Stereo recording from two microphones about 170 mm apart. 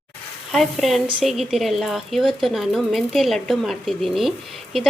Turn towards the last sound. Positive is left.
turn(degrees=0)  # may be behind; listen again after turning